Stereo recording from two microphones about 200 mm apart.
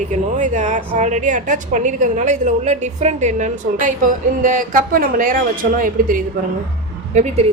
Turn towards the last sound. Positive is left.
turn(degrees=-35)  # may be behind; listen again after turning